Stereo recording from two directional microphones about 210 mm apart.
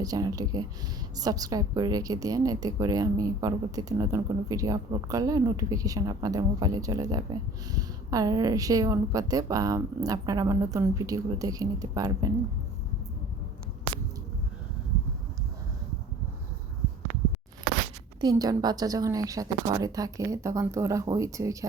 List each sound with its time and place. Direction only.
0.0 s a woman's voice: 15° right (ahead or behind)
18.2 s a woman's voice: 20° right (ahead or behind)